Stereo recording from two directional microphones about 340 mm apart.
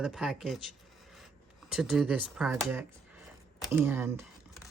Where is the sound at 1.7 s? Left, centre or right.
Centre.